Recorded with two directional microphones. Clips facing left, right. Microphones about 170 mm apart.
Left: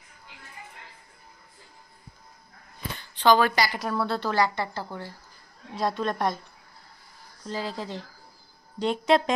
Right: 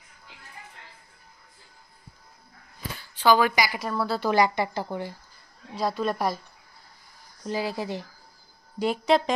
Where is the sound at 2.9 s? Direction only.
10° right (ahead or behind).